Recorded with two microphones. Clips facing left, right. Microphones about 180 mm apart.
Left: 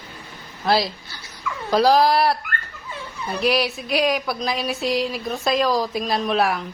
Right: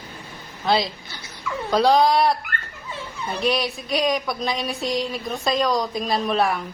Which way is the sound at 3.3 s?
5° left (ahead or behind).